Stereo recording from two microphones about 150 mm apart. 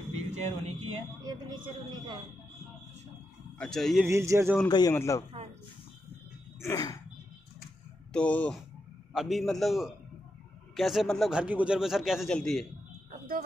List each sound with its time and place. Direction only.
0.1 s vehicle: 45° right (ahead or behind)
1.2 s speech: 30° right (ahead or behind)
3.5 s a man's voice: 5° left (ahead or behind)
4.0 s speech: 20° right (ahead or behind)
4.6 s a man's voice: 30° left (ahead or behind)
6.6 s a sound: 20° left (ahead or behind)
8.1 s a man's voice: 10° left (ahead or behind)